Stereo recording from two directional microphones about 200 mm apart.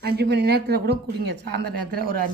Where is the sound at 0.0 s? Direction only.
50° right (ahead or behind).